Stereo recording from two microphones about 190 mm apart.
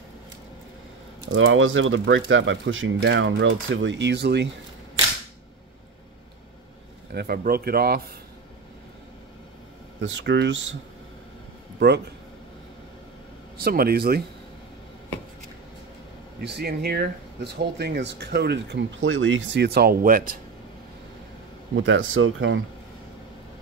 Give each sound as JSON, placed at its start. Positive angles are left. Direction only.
{"t": 1.3, "sound": "speech", "side_deg": -90}
{"t": 7.2, "sound": "speech", "side_deg": -55}
{"t": 9.9, "sound": "speech", "side_deg": -75}
{"t": 13.7, "sound": "speech", "side_deg": -55}
{"t": 16.4, "sound": "speech", "side_deg": -60}
{"t": 21.7, "sound": "speech", "side_deg": -80}